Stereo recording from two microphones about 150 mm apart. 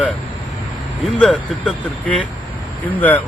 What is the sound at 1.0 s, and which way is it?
A man's voice, centre (ahead or behind).